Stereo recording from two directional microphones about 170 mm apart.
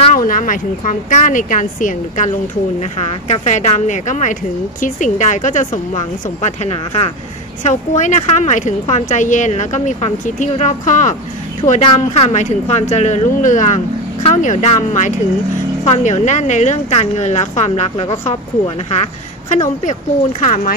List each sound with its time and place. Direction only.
0.0 s a woman's voice: 50° left (ahead or behind)